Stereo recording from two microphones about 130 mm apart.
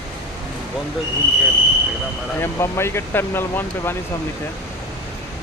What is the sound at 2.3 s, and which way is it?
Speech, 20° left (ahead or behind).